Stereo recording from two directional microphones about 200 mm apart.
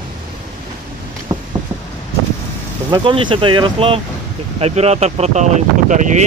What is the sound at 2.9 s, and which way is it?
Speech, 25° right (ahead or behind).